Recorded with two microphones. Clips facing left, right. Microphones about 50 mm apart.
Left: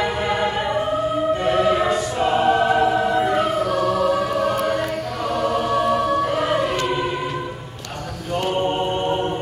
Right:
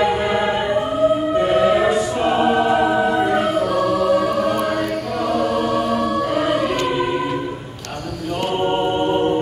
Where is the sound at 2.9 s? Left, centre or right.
Centre.